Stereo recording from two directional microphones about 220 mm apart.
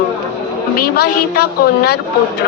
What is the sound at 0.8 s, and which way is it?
A woman's voice, 45° left (ahead or behind).